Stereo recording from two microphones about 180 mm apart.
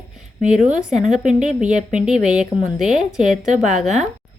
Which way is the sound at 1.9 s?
5° right (ahead or behind).